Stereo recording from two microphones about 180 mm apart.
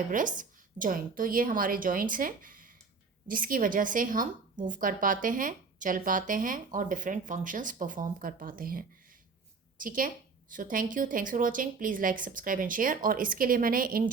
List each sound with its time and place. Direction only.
0.1 s a woman's voice: 45° right (ahead or behind)